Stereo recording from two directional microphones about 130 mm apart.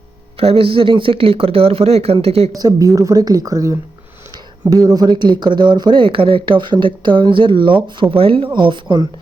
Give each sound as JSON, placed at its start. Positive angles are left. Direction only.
{"t": 0.3, "sound": "speech", "side_deg": -45}
{"t": 2.6, "sound": "a woman's voice", "side_deg": -25}